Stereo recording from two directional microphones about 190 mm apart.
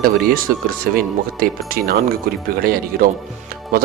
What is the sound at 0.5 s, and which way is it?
Speech, 45° right (ahead or behind).